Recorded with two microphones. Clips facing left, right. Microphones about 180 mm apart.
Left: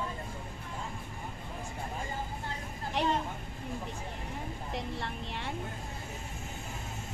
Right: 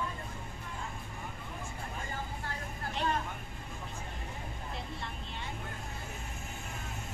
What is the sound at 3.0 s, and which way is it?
Vehicle, 75° left (ahead or behind).